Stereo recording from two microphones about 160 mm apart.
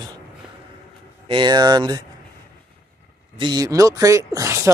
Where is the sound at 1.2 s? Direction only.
30° right (ahead or behind).